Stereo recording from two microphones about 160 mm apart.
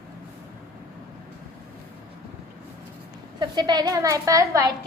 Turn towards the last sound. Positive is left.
turn(degrees=-20)  # may be behind; listen again after turning